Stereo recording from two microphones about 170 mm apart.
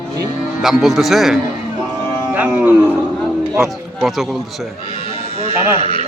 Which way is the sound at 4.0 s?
Centre (ahead or behind).